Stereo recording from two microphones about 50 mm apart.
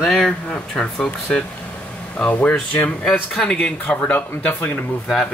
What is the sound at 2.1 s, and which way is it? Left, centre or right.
Speech, left.